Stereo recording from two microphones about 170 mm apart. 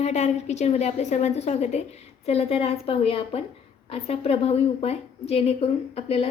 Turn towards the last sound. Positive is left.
turn(degrees=35)  # may be behind; listen again after turning